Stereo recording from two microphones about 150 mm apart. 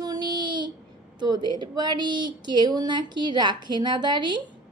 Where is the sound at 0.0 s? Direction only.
25° right (ahead or behind).